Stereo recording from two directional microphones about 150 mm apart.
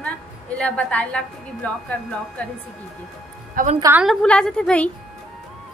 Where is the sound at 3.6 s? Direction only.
65° right (ahead or behind).